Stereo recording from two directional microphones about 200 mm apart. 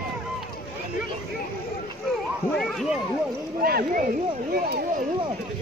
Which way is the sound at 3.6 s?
50° right (ahead or behind).